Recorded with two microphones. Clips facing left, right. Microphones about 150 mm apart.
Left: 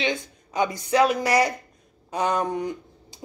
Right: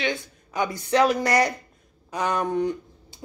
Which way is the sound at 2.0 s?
20° left (ahead or behind).